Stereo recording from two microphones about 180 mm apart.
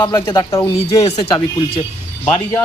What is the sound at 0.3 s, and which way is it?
Speech, 15° left (ahead or behind).